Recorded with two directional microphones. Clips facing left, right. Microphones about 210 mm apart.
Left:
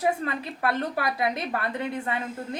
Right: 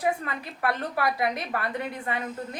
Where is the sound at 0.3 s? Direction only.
25° left (ahead or behind).